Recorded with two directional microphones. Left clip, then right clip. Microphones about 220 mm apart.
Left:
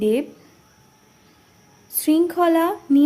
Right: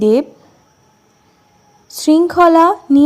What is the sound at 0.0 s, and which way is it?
Speech, 20° right (ahead or behind).